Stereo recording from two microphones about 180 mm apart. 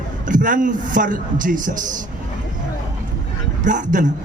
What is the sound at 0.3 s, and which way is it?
A man's voice, 45° right (ahead or behind).